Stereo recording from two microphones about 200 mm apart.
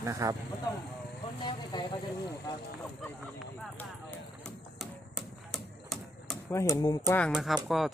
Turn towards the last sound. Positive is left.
turn(degrees=0)  # may be behind; listen again after turning